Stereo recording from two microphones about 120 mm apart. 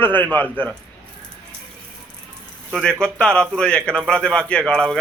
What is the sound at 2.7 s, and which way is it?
A man's voice, 5° left (ahead or behind).